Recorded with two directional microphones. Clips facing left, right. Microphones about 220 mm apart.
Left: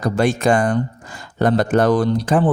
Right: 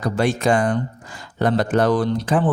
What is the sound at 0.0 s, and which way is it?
Speech, 45° left (ahead or behind).